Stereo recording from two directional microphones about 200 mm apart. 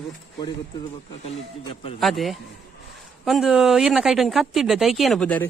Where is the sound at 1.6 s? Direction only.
30° left (ahead or behind).